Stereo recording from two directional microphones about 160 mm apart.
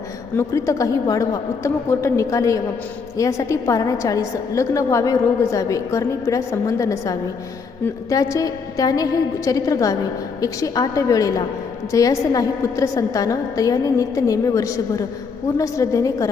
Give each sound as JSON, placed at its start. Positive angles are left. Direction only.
{"t": 0.3, "sound": "a woman's voice", "side_deg": 20}